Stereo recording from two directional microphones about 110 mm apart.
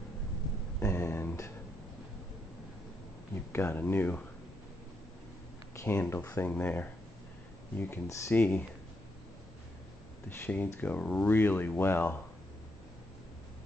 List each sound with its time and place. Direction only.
0.7 s a sound: 20° left (ahead or behind)
3.5 s speech: 20° left (ahead or behind)
5.8 s speech: 25° left (ahead or behind)
10.2 s speech: 20° left (ahead or behind)